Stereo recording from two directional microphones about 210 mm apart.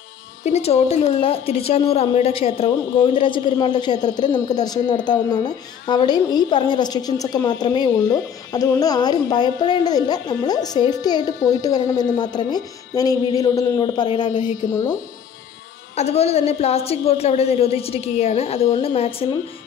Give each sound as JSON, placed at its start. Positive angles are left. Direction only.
{"t": 0.4, "sound": "a woman's voice", "side_deg": 30}
{"t": 16.0, "sound": "a woman's voice", "side_deg": 30}